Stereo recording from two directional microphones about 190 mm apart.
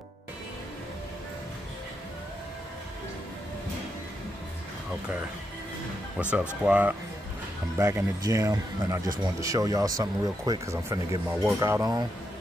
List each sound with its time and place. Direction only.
6.6 s speech: 10° right (ahead or behind)